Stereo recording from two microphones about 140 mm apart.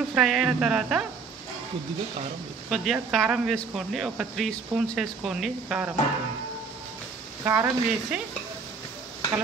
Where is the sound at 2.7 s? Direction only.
Centre (ahead or behind).